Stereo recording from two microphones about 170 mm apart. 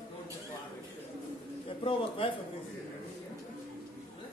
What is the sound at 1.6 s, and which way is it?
Bird, 30° left (ahead or behind).